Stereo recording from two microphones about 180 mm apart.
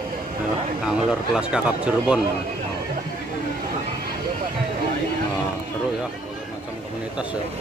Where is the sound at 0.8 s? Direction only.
5° right (ahead or behind).